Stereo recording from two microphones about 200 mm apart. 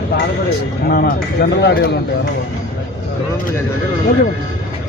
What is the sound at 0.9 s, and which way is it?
Speech, 50° left (ahead or behind).